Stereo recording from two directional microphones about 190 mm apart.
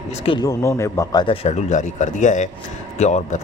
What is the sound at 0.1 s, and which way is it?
Speech, 30° left (ahead or behind).